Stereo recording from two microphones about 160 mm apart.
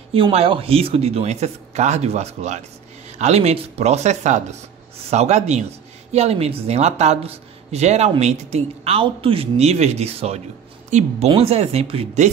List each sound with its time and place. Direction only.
0.1 s speech: 35° right (ahead or behind)